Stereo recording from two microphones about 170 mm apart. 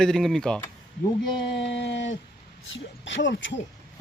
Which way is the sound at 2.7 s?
90° left.